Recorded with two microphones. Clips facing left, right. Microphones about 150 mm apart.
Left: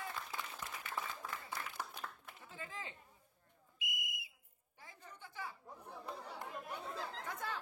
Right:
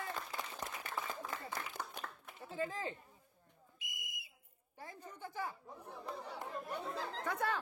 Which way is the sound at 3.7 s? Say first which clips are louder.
Left 5 dB; 45° right (ahead or behind).